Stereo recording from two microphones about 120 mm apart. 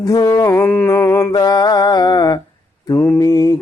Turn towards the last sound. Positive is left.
turn(degrees=30)  # may be behind; listen again after turning